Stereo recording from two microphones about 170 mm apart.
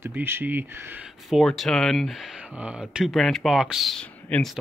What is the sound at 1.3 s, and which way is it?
Speech, centre (ahead or behind).